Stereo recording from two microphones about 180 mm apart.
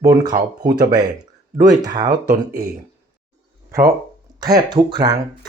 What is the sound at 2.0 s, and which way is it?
Speech, 55° right (ahead or behind).